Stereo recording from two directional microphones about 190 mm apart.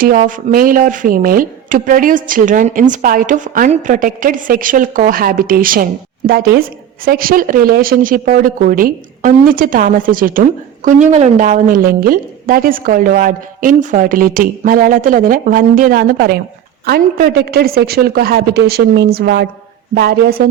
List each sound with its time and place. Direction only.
0.0 s a woman's voice: 45° right (ahead or behind)